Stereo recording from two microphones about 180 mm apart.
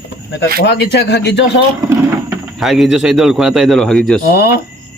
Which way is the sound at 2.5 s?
Centre (ahead or behind).